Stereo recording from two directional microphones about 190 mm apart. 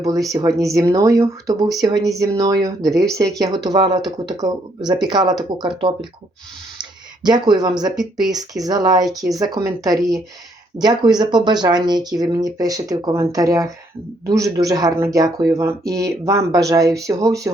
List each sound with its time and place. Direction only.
0.3 s speech: 15° right (ahead or behind)
7.3 s speech: 20° right (ahead or behind)
9.0 s speech: centre (ahead or behind)
9.3 s speech: 20° right (ahead or behind)
10.0 s speech: centre (ahead or behind)
10.8 s speech: 20° right (ahead or behind)